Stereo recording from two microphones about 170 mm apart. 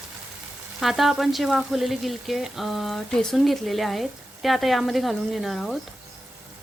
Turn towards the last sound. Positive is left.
turn(degrees=0)  # may be behind; listen again after turning